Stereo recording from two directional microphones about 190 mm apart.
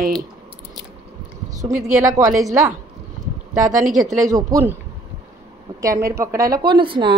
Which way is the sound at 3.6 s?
40° right (ahead or behind).